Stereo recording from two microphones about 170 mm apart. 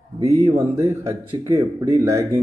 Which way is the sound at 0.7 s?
20° right (ahead or behind).